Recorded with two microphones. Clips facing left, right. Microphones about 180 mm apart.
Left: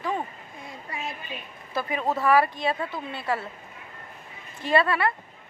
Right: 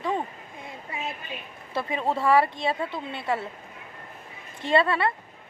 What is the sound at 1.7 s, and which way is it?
Speech, 25° right (ahead or behind).